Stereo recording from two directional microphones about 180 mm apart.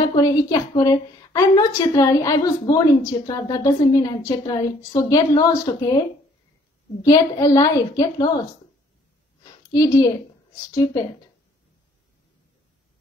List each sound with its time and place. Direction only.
0.0 s a woman's voice: 20° left (ahead or behind)
7.0 s a woman's voice: 20° left (ahead or behind)
9.4 s a sound: 20° left (ahead or behind)
10.7 s a woman's voice: 20° left (ahead or behind)